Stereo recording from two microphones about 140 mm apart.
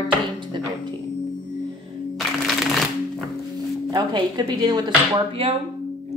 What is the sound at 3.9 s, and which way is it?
Speech, 30° right (ahead or behind).